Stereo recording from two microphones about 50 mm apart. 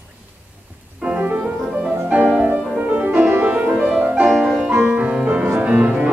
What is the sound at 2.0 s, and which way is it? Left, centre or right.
Music, right.